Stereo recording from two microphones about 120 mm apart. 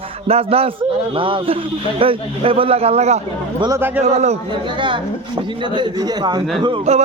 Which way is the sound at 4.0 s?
60° right (ahead or behind).